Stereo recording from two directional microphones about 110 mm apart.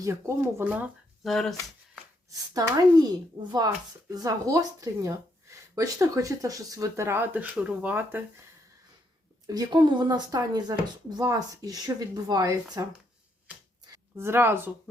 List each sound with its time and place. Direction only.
0.0 s speech: 25° right (ahead or behind)
1.2 s speech: centre (ahead or behind)
2.3 s speech: 35° right (ahead or behind)
4.1 s speech: 30° right (ahead or behind); by 8.2 s 15° right (ahead or behind)
9.5 s speech: 35° right (ahead or behind)
14.2 s speech: 20° right (ahead or behind)